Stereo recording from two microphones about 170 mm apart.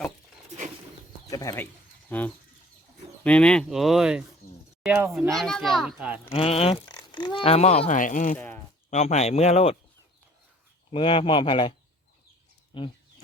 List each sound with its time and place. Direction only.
1.3 s speech: 20° left (ahead or behind); by 4.2 s 5° right (ahead or behind)
4.4 s a sound: 55° left (ahead or behind)
4.8 s speech: 10° right (ahead or behind)
5.3 s speech: centre (ahead or behind)
6.3 s speech: 35° left (ahead or behind)
8.4 s a sound: 10° left (ahead or behind)
8.9 s speech: 40° left (ahead or behind)
10.9 s speech: 30° left (ahead or behind)
12.7 s speech: 30° left (ahead or behind)